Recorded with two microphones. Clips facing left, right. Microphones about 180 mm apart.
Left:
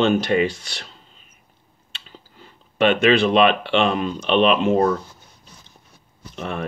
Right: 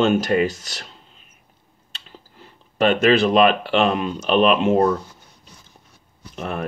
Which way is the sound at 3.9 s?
Centre (ahead or behind).